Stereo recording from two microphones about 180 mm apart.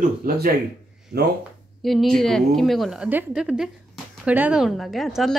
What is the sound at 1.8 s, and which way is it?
A woman's voice, centre (ahead or behind).